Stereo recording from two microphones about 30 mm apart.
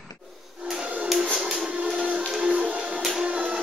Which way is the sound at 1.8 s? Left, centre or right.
Right.